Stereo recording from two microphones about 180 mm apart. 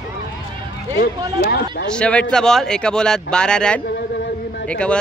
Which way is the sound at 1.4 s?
60° left (ahead or behind).